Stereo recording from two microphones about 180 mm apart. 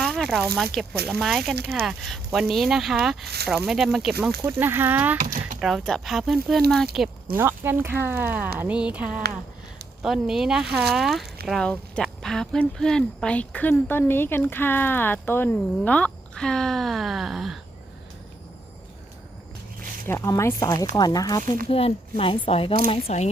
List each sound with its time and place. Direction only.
0.0 s zipper: centre (ahead or behind)
0.5 s speech: centre (ahead or behind)
4.4 s speech: 15° right (ahead or behind)
5.2 s a sound: 45° right (ahead or behind)
5.5 s speech: centre (ahead or behind)
20.1 s speech: 15° left (ahead or behind)
21.7 s speech: 30° left (ahead or behind)